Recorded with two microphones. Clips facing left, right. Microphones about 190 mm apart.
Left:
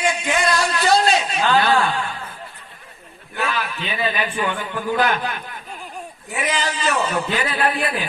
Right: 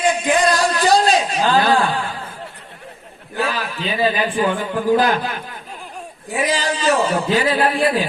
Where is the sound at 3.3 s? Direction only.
35° right (ahead or behind).